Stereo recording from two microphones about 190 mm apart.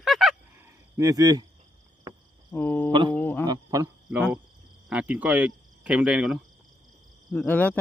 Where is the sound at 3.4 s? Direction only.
20° right (ahead or behind).